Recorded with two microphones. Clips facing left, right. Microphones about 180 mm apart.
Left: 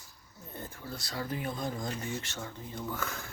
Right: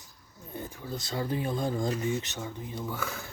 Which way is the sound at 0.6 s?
15° right (ahead or behind).